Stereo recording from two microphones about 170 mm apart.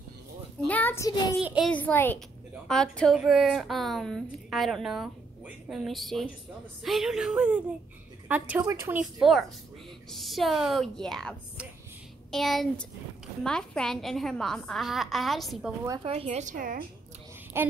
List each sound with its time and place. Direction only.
0.7 s a sound: 10° left (ahead or behind)
1.4 s speech: 5° right (ahead or behind)
1.7 s a woman's voice: 10° left (ahead or behind); by 9.0 s 15° right (ahead or behind)
9.2 s a woman's voice: centre (ahead or behind)
16.0 s a woman's voice: 35° right (ahead or behind); by 16.8 s 55° right (ahead or behind)
17.5 s speech: 15° right (ahead or behind)